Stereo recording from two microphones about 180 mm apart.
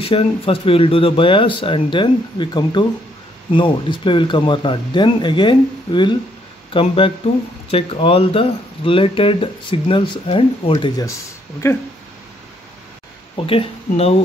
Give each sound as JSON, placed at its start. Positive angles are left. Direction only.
{"t": 0.0, "sound": "speech", "side_deg": 30}
{"t": 13.4, "sound": "speech", "side_deg": 30}